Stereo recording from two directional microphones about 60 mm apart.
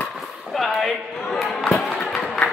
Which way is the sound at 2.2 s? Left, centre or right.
Left.